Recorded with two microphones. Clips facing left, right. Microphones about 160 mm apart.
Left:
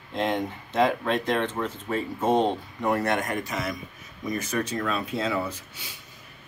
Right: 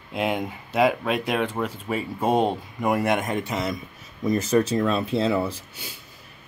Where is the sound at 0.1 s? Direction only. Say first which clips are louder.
Right 1 dB; 10° right (ahead or behind); by 5.9 s 30° right (ahead or behind).